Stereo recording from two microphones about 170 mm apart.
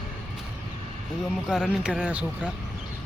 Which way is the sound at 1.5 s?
5° right (ahead or behind).